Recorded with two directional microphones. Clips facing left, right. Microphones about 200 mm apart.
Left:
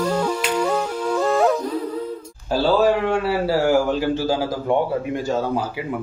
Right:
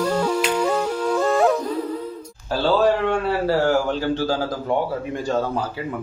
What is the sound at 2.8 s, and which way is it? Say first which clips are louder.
A man's voice: left 1 dB; 5° left (ahead or behind).